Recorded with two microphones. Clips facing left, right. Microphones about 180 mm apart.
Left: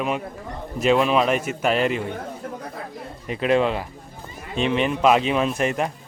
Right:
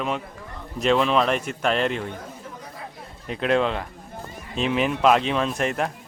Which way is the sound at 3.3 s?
5° left (ahead or behind).